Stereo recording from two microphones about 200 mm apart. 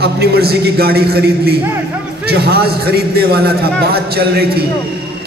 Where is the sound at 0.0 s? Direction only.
55° right (ahead or behind).